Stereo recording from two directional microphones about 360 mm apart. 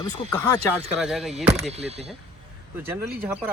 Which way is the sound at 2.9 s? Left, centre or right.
Centre.